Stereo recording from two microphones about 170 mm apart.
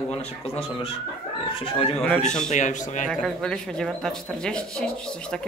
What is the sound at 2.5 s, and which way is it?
Speech, 45° left (ahead or behind).